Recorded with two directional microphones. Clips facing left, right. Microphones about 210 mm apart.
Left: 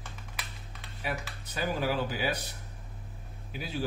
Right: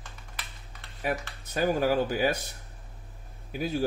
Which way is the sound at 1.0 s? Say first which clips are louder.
Right 5 dB; 45° right (ahead or behind).